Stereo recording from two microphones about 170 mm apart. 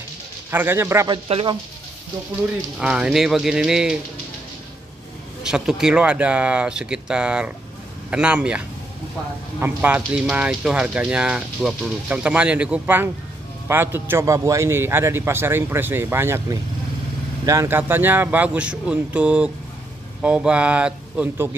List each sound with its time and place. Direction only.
0.5 s speech: 10° right (ahead or behind)
1.1 s speech: 30° right (ahead or behind)
2.8 s speech: 5° right (ahead or behind)
5.4 s speech: 5° right (ahead or behind)